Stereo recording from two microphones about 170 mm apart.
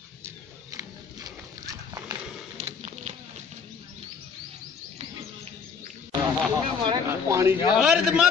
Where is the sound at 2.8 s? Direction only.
40° right (ahead or behind).